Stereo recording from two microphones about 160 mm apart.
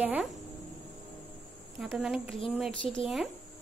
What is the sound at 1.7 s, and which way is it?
Speech, centre (ahead or behind).